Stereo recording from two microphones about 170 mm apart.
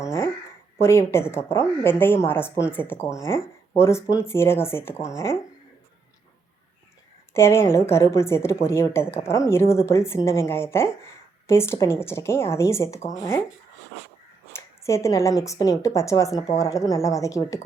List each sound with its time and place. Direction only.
0.0 s a sound: 15° left (ahead or behind)
0.8 s speech: 15° left (ahead or behind)
7.3 s speech: 15° left (ahead or behind)
14.5 s a woman's voice: 15° left (ahead or behind)